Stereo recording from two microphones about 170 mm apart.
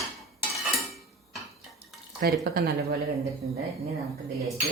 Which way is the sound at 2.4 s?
65° right (ahead or behind).